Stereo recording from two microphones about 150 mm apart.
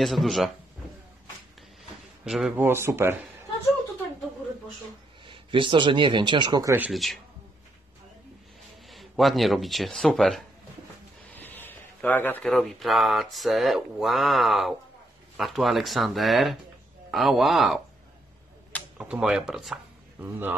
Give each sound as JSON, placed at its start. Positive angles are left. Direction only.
{"t": 0.0, "sound": "speech", "side_deg": 0}
{"t": 2.2, "sound": "speech", "side_deg": -5}
{"t": 2.6, "sound": "speech", "side_deg": -15}
{"t": 5.2, "sound": "speech", "side_deg": -35}
{"t": 6.9, "sound": "speech", "side_deg": 0}
{"t": 8.8, "sound": "speech", "side_deg": 0}
{"t": 11.3, "sound": "a sound", "side_deg": 15}
{"t": 12.4, "sound": "speech", "side_deg": 0}
{"t": 18.9, "sound": "speech", "side_deg": -5}
{"t": 20.2, "sound": "speech", "side_deg": -15}